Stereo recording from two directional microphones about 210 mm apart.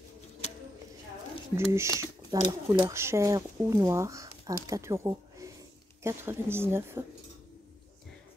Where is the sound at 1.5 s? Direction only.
15° right (ahead or behind).